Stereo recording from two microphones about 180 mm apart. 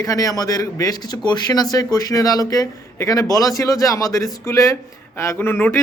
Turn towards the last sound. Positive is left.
turn(degrees=10)  # may be behind; listen again after turning